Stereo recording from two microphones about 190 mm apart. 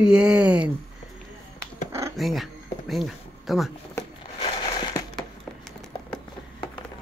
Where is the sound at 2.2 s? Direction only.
Centre (ahead or behind).